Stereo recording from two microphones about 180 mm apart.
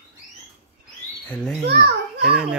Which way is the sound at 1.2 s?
5° left (ahead or behind).